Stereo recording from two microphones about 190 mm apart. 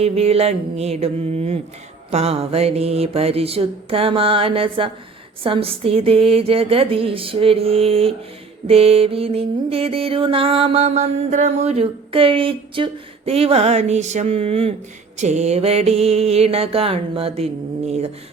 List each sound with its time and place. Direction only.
0.0 s mantra: 30° right (ahead or behind)